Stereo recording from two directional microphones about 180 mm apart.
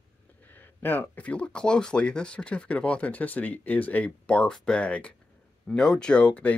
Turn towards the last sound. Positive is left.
turn(degrees=5)  # may be behind; listen again after turning